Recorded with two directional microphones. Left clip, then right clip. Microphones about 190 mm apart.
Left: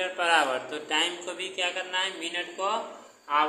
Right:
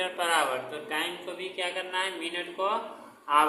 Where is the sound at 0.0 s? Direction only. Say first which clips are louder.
Left 3 dB; 5° left (ahead or behind).